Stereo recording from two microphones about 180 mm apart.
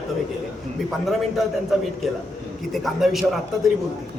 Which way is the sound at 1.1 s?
Centre (ahead or behind).